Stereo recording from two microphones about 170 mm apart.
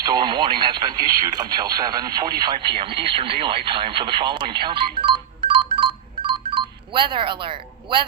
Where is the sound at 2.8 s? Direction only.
30° right (ahead or behind).